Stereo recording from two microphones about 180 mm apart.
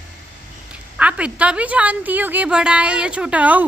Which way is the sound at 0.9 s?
5° right (ahead or behind).